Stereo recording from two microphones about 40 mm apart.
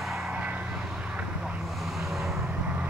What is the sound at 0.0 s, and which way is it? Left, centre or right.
Vehicle, centre.